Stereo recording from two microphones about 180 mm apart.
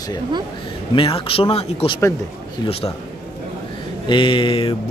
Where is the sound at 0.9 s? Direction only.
30° left (ahead or behind).